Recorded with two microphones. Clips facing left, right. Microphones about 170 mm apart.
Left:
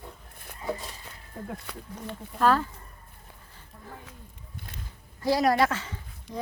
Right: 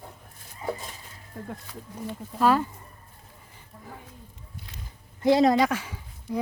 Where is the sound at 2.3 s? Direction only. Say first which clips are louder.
Right 1 dB; 10° right (ahead or behind).